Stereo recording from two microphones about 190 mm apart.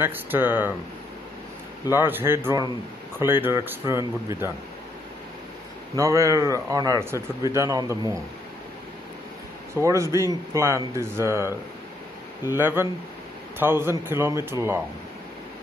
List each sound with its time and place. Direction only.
0.0 s speech: 10° right (ahead or behind)
2.0 s speech: 10° right (ahead or behind)
5.9 s speech: 15° right (ahead or behind)
9.8 s speech: 15° right (ahead or behind)
12.5 s speech: 10° right (ahead or behind)